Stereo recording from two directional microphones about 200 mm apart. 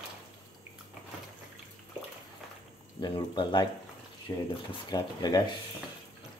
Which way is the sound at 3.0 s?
20° left (ahead or behind).